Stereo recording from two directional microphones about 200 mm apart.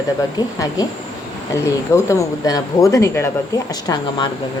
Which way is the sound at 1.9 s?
15° left (ahead or behind).